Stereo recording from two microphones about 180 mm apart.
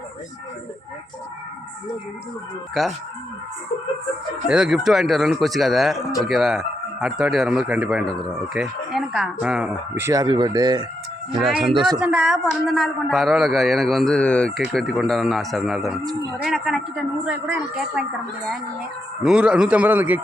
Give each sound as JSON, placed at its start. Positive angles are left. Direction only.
{"t": 2.8, "sound": "a man's voice", "side_deg": 0}
{"t": 4.4, "sound": "a man's voice", "side_deg": -5}
{"t": 11.3, "sound": "a man's voice", "side_deg": 0}
{"t": 11.7, "sound": "a man's voice", "side_deg": -25}
{"t": 11.9, "sound": "a man's voice", "side_deg": -5}
{"t": 19.2, "sound": "a man's voice", "side_deg": -5}